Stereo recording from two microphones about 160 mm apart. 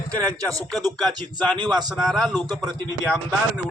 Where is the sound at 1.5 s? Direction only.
25° right (ahead or behind).